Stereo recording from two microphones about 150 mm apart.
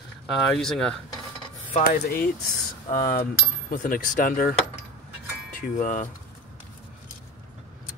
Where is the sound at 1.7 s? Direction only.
70° left (ahead or behind); by 2.2 s 85° left.